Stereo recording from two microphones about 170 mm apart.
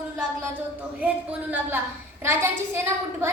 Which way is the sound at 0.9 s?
10° right (ahead or behind).